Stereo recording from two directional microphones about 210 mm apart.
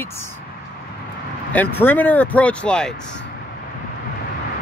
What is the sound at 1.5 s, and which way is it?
Speech, 10° left (ahead or behind).